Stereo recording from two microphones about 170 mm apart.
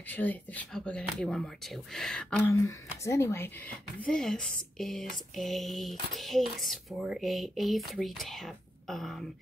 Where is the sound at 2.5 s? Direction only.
15° left (ahead or behind).